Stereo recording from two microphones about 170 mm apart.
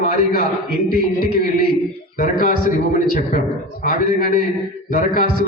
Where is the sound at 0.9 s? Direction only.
60° left (ahead or behind).